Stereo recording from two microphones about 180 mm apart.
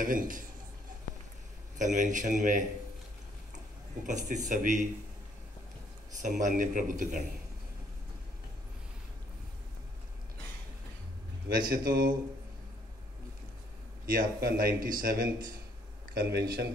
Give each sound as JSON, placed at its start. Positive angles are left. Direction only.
{"t": 0.0, "sound": "a man's voice", "side_deg": -50}
{"t": 1.8, "sound": "a man's voice", "side_deg": -45}
{"t": 4.0, "sound": "a man's voice", "side_deg": -45}
{"t": 6.1, "sound": "a man's voice", "side_deg": -45}
{"t": 11.7, "sound": "speech", "side_deg": -55}
{"t": 14.0, "sound": "a man's voice", "side_deg": -55}